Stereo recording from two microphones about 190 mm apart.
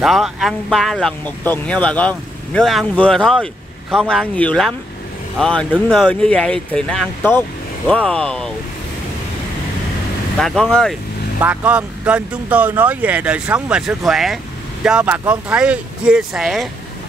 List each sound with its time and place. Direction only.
0.0 s speech: centre (ahead or behind)
10.4 s speech: 5° left (ahead or behind)
11.4 s speech: 5° right (ahead or behind)